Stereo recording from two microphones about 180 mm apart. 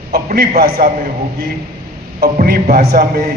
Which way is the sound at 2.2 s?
55° right (ahead or behind).